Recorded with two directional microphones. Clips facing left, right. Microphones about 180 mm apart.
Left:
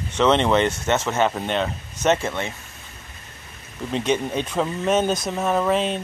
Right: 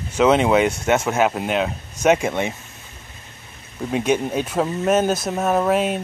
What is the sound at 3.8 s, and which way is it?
Speech, 10° right (ahead or behind).